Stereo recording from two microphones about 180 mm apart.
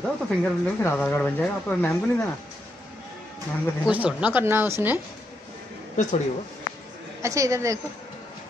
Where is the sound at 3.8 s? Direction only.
10° right (ahead or behind).